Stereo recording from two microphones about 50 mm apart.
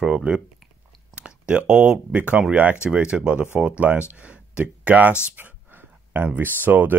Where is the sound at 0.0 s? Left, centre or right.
Right.